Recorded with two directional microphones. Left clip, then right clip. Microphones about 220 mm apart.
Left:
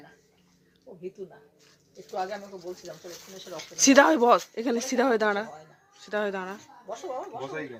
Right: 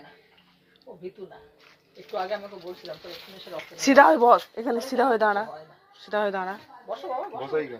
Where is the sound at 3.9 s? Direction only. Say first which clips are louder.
Right 4 dB; 30° left (ahead or behind).